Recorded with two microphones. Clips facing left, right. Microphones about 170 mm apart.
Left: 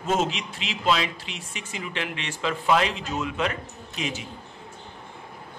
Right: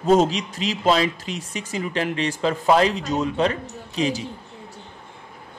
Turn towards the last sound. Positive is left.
turn(degrees=-35)  # may be behind; listen again after turning